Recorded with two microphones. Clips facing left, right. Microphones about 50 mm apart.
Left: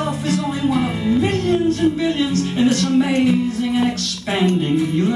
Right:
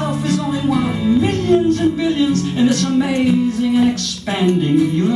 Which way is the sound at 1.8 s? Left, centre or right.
Centre.